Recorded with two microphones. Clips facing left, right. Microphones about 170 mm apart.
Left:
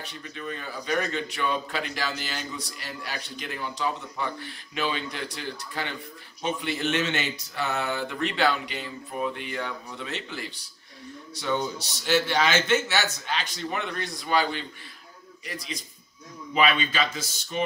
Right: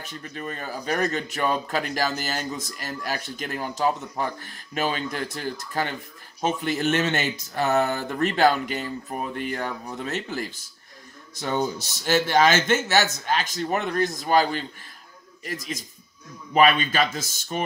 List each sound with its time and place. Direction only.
0.0 s speech: 45° right (ahead or behind)